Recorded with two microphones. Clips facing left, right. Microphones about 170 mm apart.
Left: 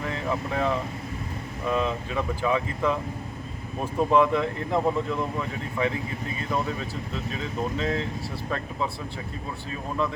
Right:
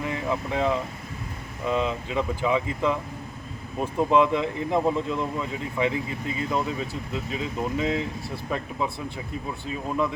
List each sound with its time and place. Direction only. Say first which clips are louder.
0.0 s speech: right 1 dB; 15° right (ahead or behind)
7.3 s speech: even; 15° right (ahead or behind)